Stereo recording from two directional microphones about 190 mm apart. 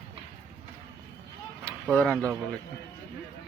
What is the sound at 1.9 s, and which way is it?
Speech, 5° left (ahead or behind).